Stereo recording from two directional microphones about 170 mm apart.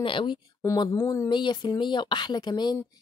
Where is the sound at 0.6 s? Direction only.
20° left (ahead or behind).